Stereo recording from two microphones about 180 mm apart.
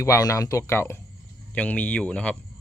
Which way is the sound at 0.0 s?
20° left (ahead or behind).